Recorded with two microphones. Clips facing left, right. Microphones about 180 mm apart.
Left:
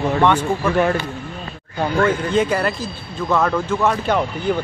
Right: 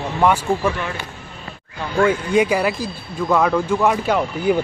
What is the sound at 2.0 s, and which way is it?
Speech, 10° right (ahead or behind).